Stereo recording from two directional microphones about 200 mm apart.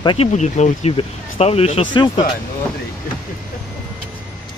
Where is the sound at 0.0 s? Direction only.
25° left (ahead or behind).